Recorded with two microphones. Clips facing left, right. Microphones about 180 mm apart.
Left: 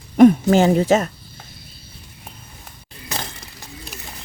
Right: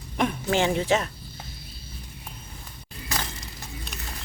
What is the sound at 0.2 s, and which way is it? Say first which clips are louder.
Speech: left 13 dB; 45° left (ahead or behind).